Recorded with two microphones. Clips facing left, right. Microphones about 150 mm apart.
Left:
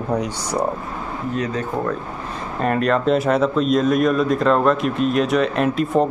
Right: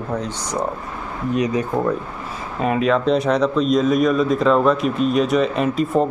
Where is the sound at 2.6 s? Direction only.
Centre (ahead or behind).